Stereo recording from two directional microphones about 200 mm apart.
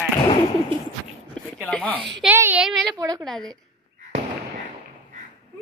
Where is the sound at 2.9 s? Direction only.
20° right (ahead or behind).